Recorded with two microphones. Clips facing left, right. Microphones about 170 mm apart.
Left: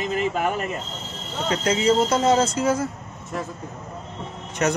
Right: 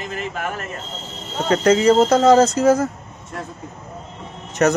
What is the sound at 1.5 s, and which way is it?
Speech, 50° right (ahead or behind).